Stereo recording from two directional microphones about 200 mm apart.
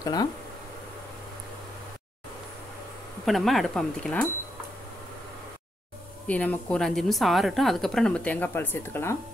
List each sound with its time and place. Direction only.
0.0 s speech: 20° left (ahead or behind)
3.3 s a woman's voice: centre (ahead or behind)
6.2 s a woman's voice: 5° left (ahead or behind)